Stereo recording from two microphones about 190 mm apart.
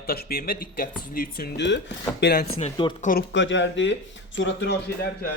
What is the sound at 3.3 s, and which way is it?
Speech, 75° left (ahead or behind).